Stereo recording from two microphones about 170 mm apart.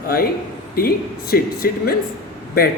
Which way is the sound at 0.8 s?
60° left (ahead or behind).